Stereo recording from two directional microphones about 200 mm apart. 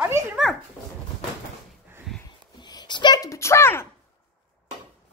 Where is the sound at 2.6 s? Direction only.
20° left (ahead or behind).